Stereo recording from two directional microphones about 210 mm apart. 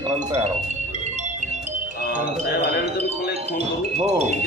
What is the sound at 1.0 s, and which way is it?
Music, 35° right (ahead or behind).